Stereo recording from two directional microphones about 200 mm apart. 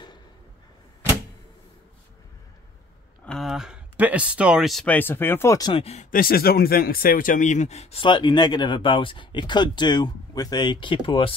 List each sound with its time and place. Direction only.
3.3 s speech: centre (ahead or behind); by 11.3 s 25° left (ahead or behind)